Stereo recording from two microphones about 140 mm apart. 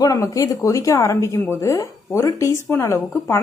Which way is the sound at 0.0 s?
25° left (ahead or behind).